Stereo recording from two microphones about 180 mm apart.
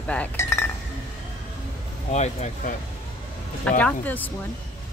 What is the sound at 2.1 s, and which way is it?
Speech, 40° left (ahead or behind).